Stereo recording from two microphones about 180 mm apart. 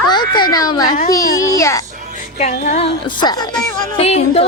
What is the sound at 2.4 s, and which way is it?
A woman's voice, 40° left (ahead or behind).